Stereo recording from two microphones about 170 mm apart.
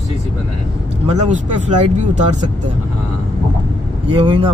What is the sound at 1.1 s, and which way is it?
Speech, 45° right (ahead or behind).